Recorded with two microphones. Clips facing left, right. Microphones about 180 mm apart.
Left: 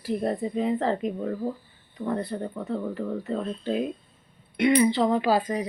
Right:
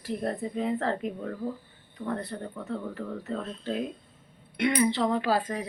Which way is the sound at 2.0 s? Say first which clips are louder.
Left 4 dB; 20° left (ahead or behind).